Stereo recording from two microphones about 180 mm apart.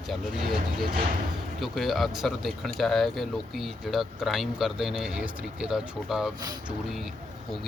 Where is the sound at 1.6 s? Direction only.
Centre (ahead or behind).